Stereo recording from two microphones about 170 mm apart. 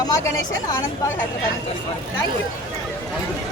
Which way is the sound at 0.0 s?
20° left (ahead or behind).